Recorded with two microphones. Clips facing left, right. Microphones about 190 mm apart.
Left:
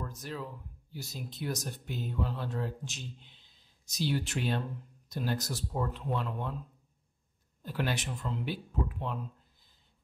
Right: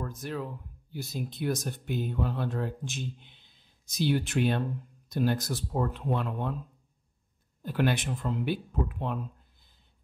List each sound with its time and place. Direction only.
0.0 s speech: 55° right (ahead or behind)
7.6 s speech: 55° right (ahead or behind)